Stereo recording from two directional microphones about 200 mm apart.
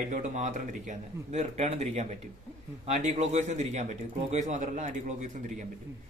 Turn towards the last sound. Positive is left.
turn(degrees=-35)  # may be behind; listen again after turning